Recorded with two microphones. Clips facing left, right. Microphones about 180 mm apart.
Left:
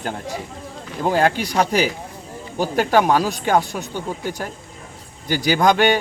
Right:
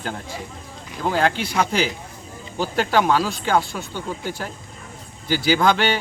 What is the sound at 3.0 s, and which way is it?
Speech, 40° left (ahead or behind).